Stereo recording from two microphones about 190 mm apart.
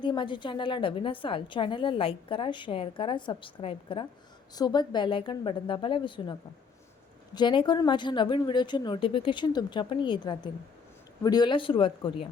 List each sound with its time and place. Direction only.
0.0 s a woman's voice: 25° left (ahead or behind)
7.3 s a woman's voice: 25° left (ahead or behind)